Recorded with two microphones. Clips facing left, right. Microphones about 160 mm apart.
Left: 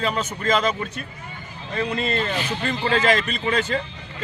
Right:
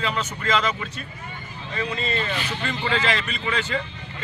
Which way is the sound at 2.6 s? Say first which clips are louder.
Left 4 dB; 40° left (ahead or behind).